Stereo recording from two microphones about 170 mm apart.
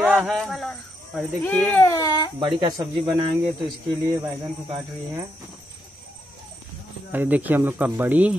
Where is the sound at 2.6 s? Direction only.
25° right (ahead or behind).